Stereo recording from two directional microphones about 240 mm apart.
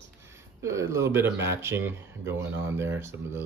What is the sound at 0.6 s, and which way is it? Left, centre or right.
Speech, centre.